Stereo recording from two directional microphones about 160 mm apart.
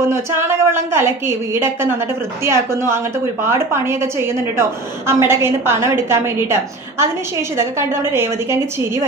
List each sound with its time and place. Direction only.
0.1 s a woman's voice: 15° right (ahead or behind)
8.1 s a woman's voice: 15° right (ahead or behind)